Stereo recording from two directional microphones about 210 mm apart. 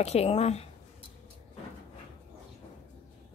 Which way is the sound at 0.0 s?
30° left (ahead or behind).